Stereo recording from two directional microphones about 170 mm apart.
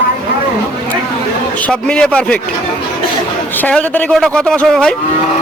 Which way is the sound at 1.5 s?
10° left (ahead or behind).